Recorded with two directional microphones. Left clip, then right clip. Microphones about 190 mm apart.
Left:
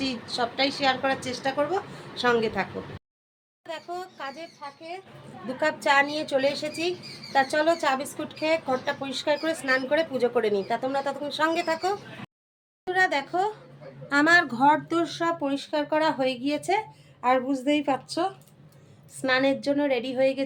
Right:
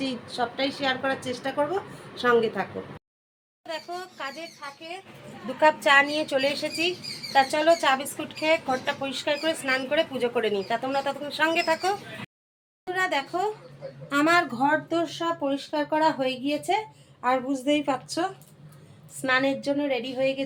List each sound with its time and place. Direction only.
0.0 s a woman's voice: 10° left (ahead or behind)
3.7 s speech: centre (ahead or behind)
5.5 s a woman's voice: 5° right (ahead or behind); by 14.6 s 15° left (ahead or behind)
14.9 s a woman's voice: centre (ahead or behind)